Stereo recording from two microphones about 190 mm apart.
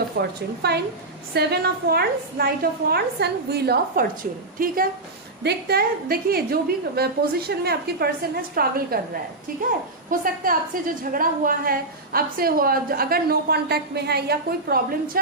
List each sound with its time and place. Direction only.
0.2 s a woman's voice: 60° right (ahead or behind)
10.1 s a woman's voice: 50° right (ahead or behind)